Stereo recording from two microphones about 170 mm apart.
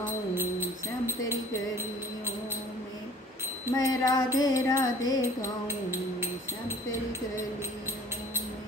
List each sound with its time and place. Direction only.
0.3 s music: 10° right (ahead or behind)
3.7 s music: 20° left (ahead or behind)